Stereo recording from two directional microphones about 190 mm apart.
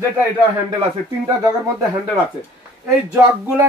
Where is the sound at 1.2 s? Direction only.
15° right (ahead or behind).